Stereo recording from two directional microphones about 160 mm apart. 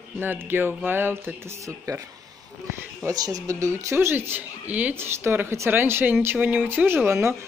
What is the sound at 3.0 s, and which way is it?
Speech, 25° right (ahead or behind).